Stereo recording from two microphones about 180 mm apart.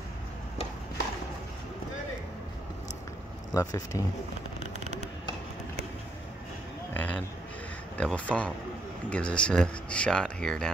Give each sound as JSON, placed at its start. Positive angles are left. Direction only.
{"t": 3.5, "sound": "speech", "side_deg": 20}
{"t": 6.9, "sound": "a sound", "side_deg": 10}
{"t": 8.0, "sound": "speech", "side_deg": 5}